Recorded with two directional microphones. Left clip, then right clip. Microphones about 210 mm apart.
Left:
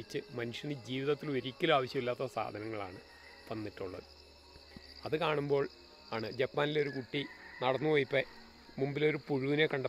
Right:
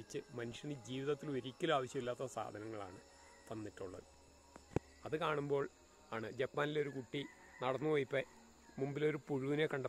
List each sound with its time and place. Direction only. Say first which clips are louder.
0.1 s speech: left 6 dB; 15° left (ahead or behind)
5.0 s speech: left 7 dB; 15° left (ahead or behind)